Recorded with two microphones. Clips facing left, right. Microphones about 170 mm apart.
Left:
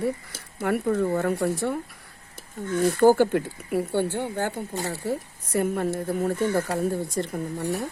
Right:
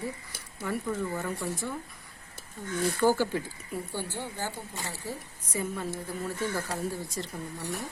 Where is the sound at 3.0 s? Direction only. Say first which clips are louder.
Left 8 dB; 50° left (ahead or behind).